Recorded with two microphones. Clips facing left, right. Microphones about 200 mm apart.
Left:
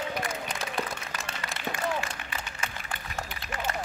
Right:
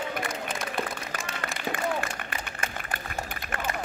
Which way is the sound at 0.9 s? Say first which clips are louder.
Right 3 dB; 55° right (ahead or behind).